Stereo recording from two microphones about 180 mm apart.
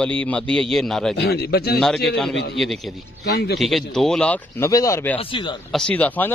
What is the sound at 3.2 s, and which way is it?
Speech, 65° left (ahead or behind).